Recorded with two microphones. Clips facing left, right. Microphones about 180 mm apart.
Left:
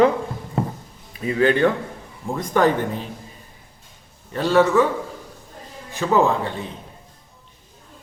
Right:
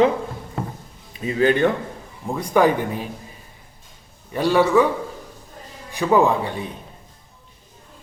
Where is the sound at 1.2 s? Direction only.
25° right (ahead or behind).